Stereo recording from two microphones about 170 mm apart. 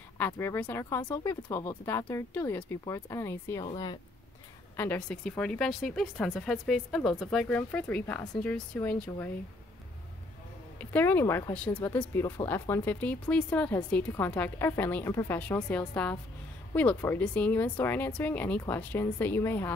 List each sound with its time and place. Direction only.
0.2 s speech: 10° left (ahead or behind)
4.7 s speech: 10° left (ahead or behind)
10.8 s speech: 10° left (ahead or behind)